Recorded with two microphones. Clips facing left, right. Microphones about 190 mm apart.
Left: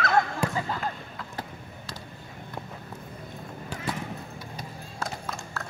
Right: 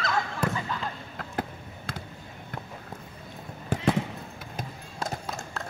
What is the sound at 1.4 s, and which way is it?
Basketball bounce, 55° right (ahead or behind).